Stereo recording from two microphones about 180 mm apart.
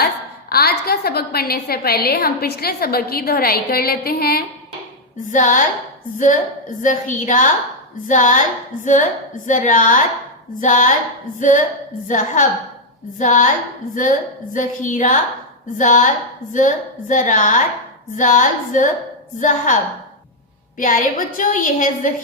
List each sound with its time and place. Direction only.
0.5 s a woman's voice: 60° left (ahead or behind)
5.2 s a woman's voice: 45° left (ahead or behind)
20.7 s a woman's voice: 45° left (ahead or behind)